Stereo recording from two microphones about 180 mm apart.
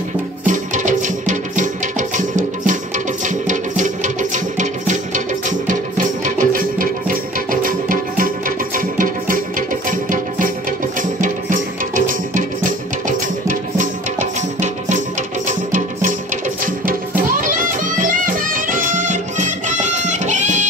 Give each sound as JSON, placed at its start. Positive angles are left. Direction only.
{"t": 0.5, "sound": "music", "side_deg": -45}
{"t": 15.4, "sound": "music", "side_deg": -45}